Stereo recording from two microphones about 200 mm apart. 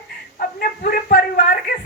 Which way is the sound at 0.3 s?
45° left (ahead or behind).